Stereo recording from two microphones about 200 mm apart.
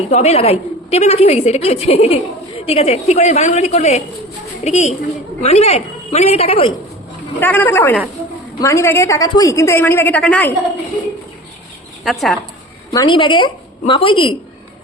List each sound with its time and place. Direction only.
0.1 s a woman's voice: 35° left (ahead or behind)
7.3 s a woman's voice: 10° left (ahead or behind)
12.0 s speech: centre (ahead or behind)
12.9 s a woman's voice: 20° left (ahead or behind)